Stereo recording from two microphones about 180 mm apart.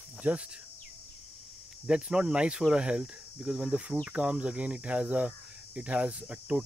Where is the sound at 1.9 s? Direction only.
5° right (ahead or behind).